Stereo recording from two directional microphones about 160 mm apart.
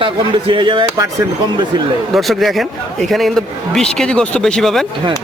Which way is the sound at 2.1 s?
Centre (ahead or behind).